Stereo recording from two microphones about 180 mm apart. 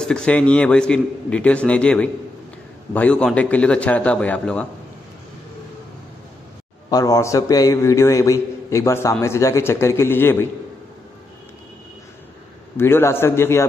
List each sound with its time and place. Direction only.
0.0 s a man's voice: 5° left (ahead or behind)
6.9 s a man's voice: 20° left (ahead or behind)
12.7 s a man's voice: 15° left (ahead or behind)